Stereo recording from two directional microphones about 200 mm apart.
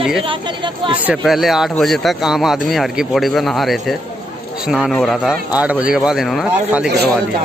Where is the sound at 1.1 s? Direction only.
Centre (ahead or behind).